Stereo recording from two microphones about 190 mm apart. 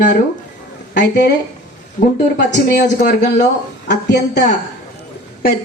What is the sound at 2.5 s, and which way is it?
A woman's voice, 60° left (ahead or behind).